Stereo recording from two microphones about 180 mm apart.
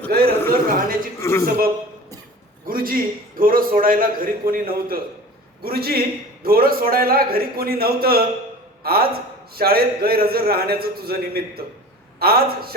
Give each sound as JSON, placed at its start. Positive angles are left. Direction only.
{"t": 0.1, "sound": "a man's voice", "side_deg": -55}
{"t": 1.2, "sound": "a man's voice", "side_deg": 15}
{"t": 2.6, "sound": "a man's voice", "side_deg": -55}